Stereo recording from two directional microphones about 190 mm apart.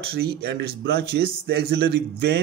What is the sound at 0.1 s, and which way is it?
Speech, 55° right (ahead or behind).